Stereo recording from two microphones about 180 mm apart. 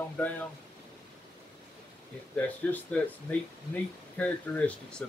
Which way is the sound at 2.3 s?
10° left (ahead or behind).